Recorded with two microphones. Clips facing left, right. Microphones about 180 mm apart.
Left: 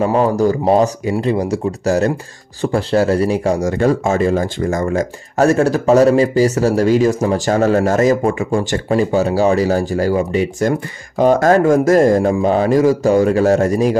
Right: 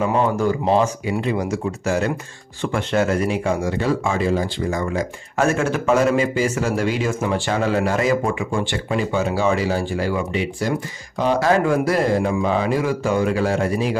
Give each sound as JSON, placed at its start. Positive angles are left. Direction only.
{"t": 0.0, "sound": "a man's voice", "side_deg": 40}